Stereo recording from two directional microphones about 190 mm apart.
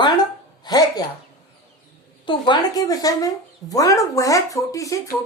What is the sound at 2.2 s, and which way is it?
Speech, 25° left (ahead or behind).